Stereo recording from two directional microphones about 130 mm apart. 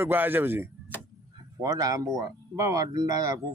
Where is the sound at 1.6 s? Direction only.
30° right (ahead or behind).